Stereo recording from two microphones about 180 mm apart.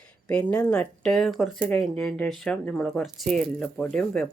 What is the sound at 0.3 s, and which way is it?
Speech, 5° left (ahead or behind).